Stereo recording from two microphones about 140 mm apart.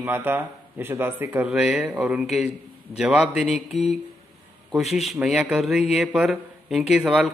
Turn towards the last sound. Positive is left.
turn(degrees=-5)  # may be behind; listen again after turning